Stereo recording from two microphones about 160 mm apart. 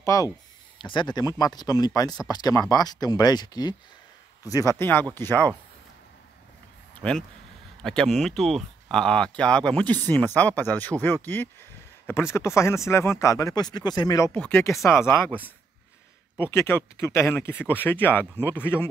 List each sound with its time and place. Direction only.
0.0 s speech: 20° left (ahead or behind)
7.0 s speech: 5° left (ahead or behind); by 14.3 s 20° left (ahead or behind)
14.3 s speech: 10° left (ahead or behind)
16.3 s speech: 15° left (ahead or behind)